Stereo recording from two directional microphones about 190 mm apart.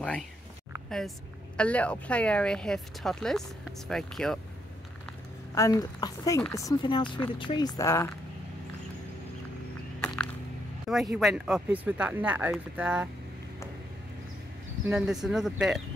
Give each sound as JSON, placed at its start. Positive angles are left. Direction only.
{"t": 0.8, "sound": "speech", "side_deg": 0}
{"t": 5.5, "sound": "speech", "side_deg": 20}
{"t": 10.9, "sound": "speech", "side_deg": 0}
{"t": 14.9, "sound": "speech", "side_deg": -5}